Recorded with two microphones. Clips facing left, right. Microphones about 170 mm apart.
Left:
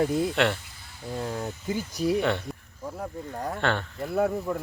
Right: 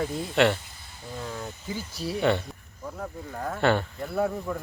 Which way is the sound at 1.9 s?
15° left (ahead or behind).